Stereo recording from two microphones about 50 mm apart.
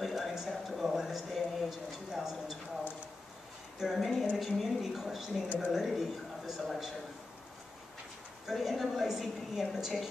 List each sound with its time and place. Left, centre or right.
0.0 s a sound: centre
3.8 s a woman's voice: centre
8.5 s a woman's voice: centre